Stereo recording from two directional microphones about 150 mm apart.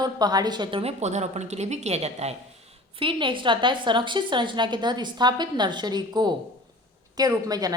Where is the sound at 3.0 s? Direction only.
35° right (ahead or behind).